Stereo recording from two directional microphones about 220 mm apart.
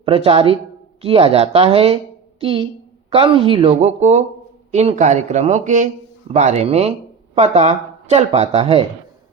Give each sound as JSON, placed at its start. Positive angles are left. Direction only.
{"t": 0.0, "sound": "speech", "side_deg": -25}